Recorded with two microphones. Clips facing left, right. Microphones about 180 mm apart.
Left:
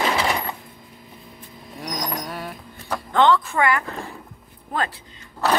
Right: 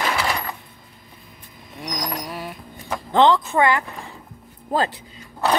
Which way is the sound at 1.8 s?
5° right (ahead or behind).